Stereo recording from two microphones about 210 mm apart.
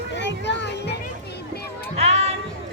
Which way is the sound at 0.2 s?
55° left (ahead or behind).